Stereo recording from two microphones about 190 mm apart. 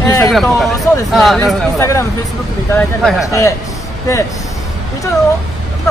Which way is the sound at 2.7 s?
Centre (ahead or behind).